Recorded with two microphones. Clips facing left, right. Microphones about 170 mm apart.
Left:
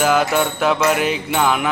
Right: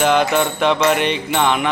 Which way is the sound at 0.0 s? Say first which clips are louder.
Right 1 dB; 5° left (ahead or behind).